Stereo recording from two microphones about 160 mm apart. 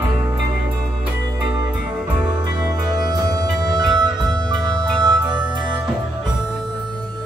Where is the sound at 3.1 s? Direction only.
25° right (ahead or behind).